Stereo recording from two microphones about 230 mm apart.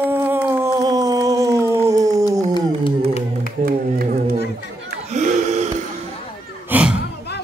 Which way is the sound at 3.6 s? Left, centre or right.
Right.